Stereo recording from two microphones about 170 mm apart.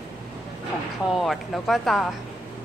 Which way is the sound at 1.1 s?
Centre (ahead or behind).